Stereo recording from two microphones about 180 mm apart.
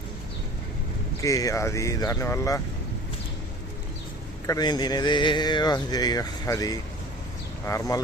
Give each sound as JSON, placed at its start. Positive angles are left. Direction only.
{"t": 1.2, "sound": "speech", "side_deg": 20}
{"t": 4.4, "sound": "speech", "side_deg": 20}